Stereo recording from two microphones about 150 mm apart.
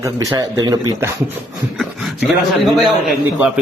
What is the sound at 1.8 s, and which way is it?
A man's voice, centre (ahead or behind).